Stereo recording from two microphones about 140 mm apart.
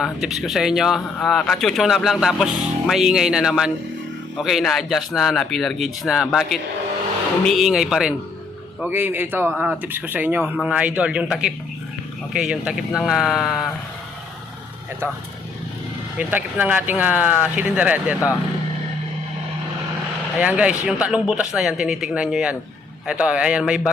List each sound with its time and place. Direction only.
0.0 s a man's voice: centre (ahead or behind)
8.8 s a man's voice: 15° right (ahead or behind)
15.0 s speech: 20° right (ahead or behind)
20.4 s speech: 10° right (ahead or behind)